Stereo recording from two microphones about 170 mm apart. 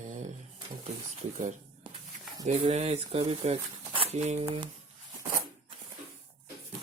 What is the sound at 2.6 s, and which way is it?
Speech, 40° right (ahead or behind).